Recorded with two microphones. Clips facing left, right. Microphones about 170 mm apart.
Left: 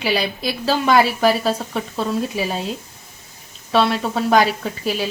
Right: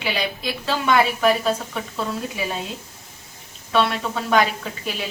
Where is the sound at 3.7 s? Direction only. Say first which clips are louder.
Left 3 dB; 35° left (ahead or behind).